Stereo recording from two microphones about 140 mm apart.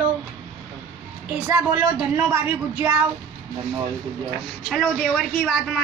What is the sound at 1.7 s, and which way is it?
Speech, 10° right (ahead or behind).